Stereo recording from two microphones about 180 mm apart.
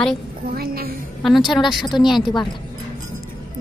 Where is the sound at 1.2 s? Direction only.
Centre (ahead or behind).